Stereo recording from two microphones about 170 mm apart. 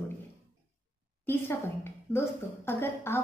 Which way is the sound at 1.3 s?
15° left (ahead or behind).